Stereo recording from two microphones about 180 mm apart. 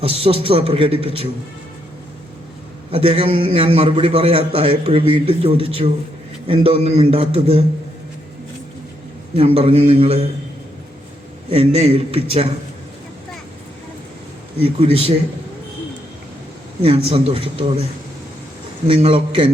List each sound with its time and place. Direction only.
0.0 s a man's voice: 30° right (ahead or behind)
2.9 s a man's voice: 30° right (ahead or behind)
9.3 s a man's voice: 30° right (ahead or behind)
11.5 s a man's voice: 35° right (ahead or behind)
16.8 s a man's voice: 30° right (ahead or behind)
18.9 s a man's voice: 30° right (ahead or behind)